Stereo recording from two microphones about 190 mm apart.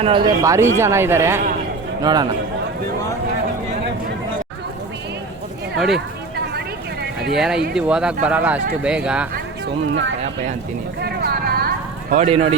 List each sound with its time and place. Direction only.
0.0 s a man's voice: 25° right (ahead or behind)
5.7 s speech: centre (ahead or behind)
7.2 s speech: centre (ahead or behind)
9.9 s speech: 75° right (ahead or behind)
11.0 s vehicle: 55° right (ahead or behind)
12.1 s speech: 35° right (ahead or behind)